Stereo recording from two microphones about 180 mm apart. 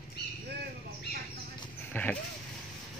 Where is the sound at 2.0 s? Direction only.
10° left (ahead or behind).